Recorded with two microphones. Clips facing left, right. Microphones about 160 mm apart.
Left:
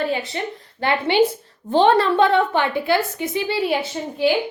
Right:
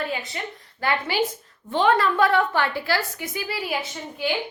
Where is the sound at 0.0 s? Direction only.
30° left (ahead or behind).